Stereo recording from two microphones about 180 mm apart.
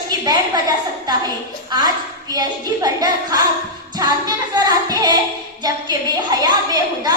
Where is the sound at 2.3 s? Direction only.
20° right (ahead or behind).